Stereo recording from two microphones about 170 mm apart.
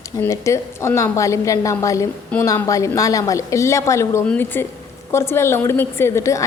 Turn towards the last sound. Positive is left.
turn(degrees=20)  # may be behind; listen again after turning